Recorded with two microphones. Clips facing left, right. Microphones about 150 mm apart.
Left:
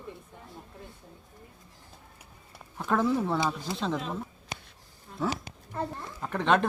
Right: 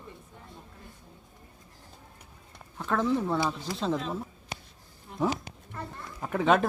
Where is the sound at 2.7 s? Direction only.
10° left (ahead or behind).